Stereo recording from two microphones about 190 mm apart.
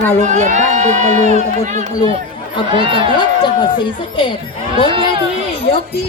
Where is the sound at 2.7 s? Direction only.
25° right (ahead or behind).